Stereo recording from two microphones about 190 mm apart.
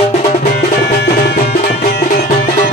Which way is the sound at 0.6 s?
60° left (ahead or behind).